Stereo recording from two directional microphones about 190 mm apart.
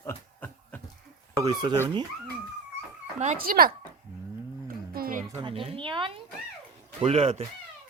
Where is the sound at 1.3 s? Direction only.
20° right (ahead or behind).